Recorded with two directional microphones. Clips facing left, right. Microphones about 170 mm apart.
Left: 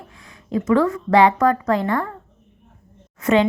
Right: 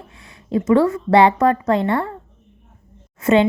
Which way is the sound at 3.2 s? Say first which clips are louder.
Right 2 dB; 25° right (ahead or behind).